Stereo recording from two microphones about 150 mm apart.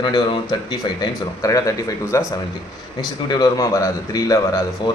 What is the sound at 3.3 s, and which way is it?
A man's voice, 25° left (ahead or behind).